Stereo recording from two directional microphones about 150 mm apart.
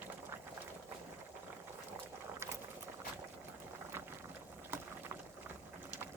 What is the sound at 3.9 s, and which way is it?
Boat, 15° right (ahead or behind).